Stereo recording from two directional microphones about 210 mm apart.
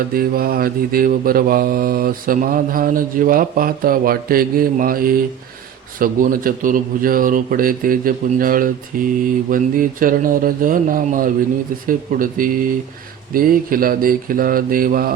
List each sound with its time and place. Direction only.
0.1 s mantra: 45° right (ahead or behind)
8.9 s a man's voice: 40° right (ahead or behind)
13.3 s mantra: 40° right (ahead or behind)